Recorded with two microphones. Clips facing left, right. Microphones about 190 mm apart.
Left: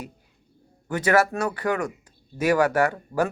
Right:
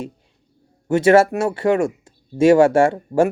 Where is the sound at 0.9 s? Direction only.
25° right (ahead or behind).